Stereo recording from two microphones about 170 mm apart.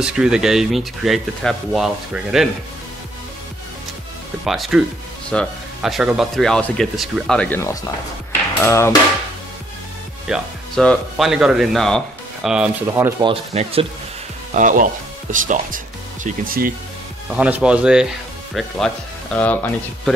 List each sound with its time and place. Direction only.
0.0 s speech: 5° right (ahead or behind)
4.5 s speech: centre (ahead or behind); by 8.9 s 15° left (ahead or behind)
10.2 s speech: centre (ahead or behind)
13.2 s speech: 35° right (ahead or behind)
14.5 s speech: 50° right (ahead or behind)
17.4 s speech: 5° right (ahead or behind)
19.3 s speech: 10° left (ahead or behind)